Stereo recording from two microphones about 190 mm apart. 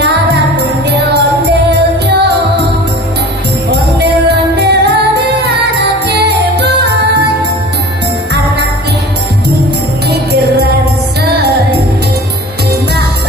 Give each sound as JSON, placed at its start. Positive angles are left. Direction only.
{"t": 0.6, "sound": "music", "side_deg": -60}
{"t": 4.6, "sound": "music", "side_deg": -60}
{"t": 10.0, "sound": "music", "side_deg": -60}